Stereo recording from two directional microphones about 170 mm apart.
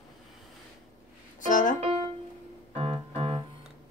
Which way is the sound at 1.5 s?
50° left (ahead or behind).